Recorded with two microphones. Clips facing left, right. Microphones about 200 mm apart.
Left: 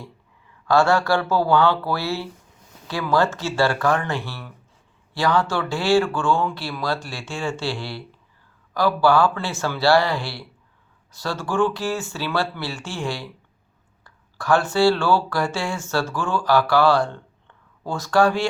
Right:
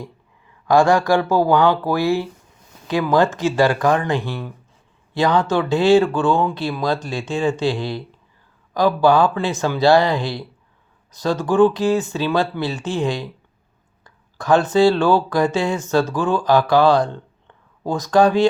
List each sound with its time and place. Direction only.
0.7 s speech: 15° right (ahead or behind)